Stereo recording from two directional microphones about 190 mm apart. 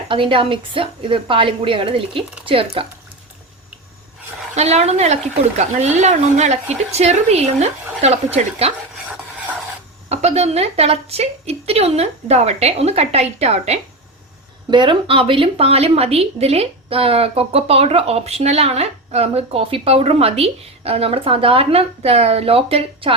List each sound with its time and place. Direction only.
0.1 s a woman's voice: 25° right (ahead or behind)
4.5 s a woman's voice: 35° right (ahead or behind)
10.1 s a woman's voice: 35° right (ahead or behind)